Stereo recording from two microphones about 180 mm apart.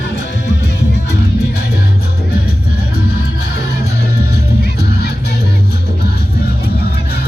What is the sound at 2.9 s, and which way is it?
Music, 60° left (ahead or behind).